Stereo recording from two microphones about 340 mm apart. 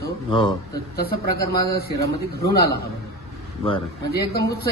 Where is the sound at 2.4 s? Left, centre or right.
Left.